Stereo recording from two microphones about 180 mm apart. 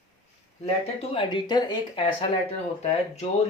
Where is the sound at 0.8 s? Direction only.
30° left (ahead or behind).